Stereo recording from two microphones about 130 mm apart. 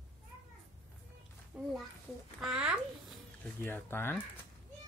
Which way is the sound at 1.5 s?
5° right (ahead or behind).